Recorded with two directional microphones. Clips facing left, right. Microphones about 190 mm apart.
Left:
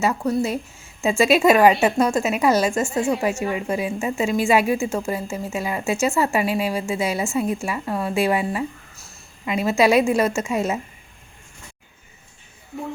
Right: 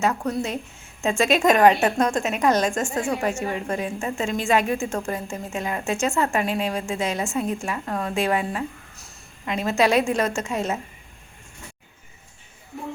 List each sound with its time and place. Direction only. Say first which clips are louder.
0.0 s speech: left 3 dB; 5° left (ahead or behind)